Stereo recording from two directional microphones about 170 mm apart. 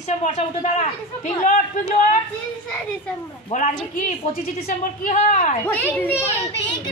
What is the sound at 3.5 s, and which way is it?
A man's voice, 45° left (ahead or behind).